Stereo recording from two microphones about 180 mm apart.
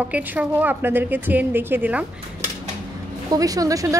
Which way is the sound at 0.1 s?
10° right (ahead or behind).